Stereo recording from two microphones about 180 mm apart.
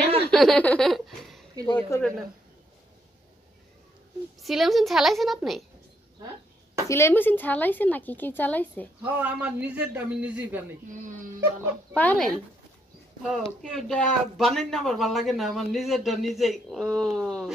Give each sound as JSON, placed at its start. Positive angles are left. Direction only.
{"t": 0.3, "sound": "a woman's voice", "side_deg": 5}
{"t": 4.4, "sound": "speech", "side_deg": 0}
{"t": 6.9, "sound": "a woman's voice", "side_deg": 15}
{"t": 9.0, "sound": "a man's voice", "side_deg": -10}
{"t": 10.9, "sound": "speech", "side_deg": -45}
{"t": 11.9, "sound": "a woman's voice", "side_deg": 10}